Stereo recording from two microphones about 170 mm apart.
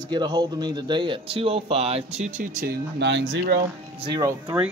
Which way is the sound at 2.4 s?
55° right (ahead or behind).